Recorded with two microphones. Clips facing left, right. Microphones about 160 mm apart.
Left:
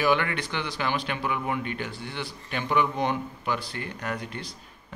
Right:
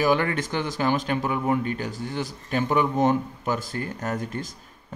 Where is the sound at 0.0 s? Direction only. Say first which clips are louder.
Right 3 dB; 40° right (ahead or behind).